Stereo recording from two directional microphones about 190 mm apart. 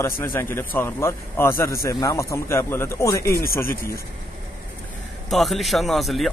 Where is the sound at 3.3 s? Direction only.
55° left (ahead or behind).